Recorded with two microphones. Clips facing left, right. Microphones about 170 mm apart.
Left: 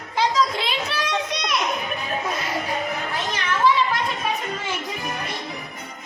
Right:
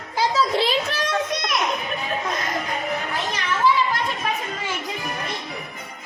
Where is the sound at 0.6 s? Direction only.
45° right (ahead or behind).